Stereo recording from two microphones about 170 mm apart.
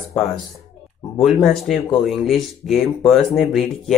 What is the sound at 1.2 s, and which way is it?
Speech, centre (ahead or behind).